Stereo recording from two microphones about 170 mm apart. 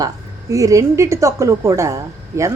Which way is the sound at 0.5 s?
20° right (ahead or behind).